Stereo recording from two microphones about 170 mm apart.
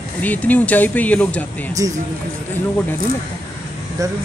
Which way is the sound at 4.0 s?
20° right (ahead or behind).